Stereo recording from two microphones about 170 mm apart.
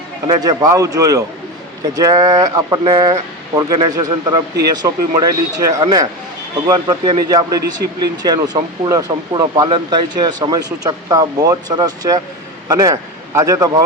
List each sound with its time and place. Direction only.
0.3 s a man's voice: 20° right (ahead or behind)